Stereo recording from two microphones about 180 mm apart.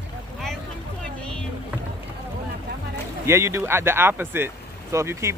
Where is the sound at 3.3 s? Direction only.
15° right (ahead or behind).